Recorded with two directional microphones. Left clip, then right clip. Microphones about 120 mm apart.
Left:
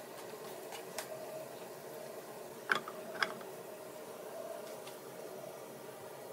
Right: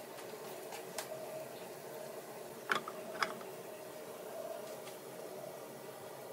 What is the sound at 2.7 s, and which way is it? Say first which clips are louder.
Tick-tock: left 2 dB; centre (ahead or behind).